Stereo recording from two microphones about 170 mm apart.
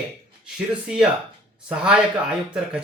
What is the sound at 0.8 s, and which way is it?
Speech, 5° right (ahead or behind).